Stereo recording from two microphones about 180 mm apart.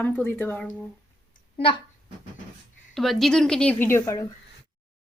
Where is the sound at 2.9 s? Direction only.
Centre (ahead or behind).